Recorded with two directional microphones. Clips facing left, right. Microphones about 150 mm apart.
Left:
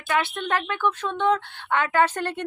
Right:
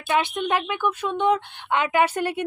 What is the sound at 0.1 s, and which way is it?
Speech, 15° right (ahead or behind).